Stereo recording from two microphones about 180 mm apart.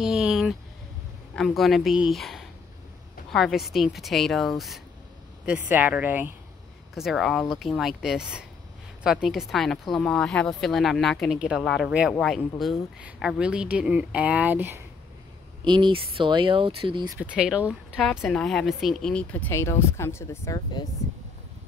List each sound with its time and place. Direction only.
0.0 s a sound: 5° right (ahead or behind)
1.3 s speech: centre (ahead or behind)
7.0 s speech: centre (ahead or behind)
15.6 s speech: 25° right (ahead or behind)
17.2 s speech: 5° right (ahead or behind); by 20.8 s 20° left (ahead or behind)